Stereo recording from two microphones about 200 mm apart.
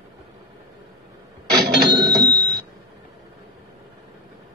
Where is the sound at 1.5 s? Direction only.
50° right (ahead or behind).